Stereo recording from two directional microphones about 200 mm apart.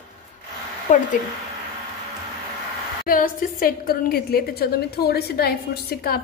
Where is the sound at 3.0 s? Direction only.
45° left (ahead or behind).